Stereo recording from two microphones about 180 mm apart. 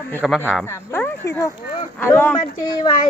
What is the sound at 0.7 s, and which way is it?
Speech, 15° left (ahead or behind).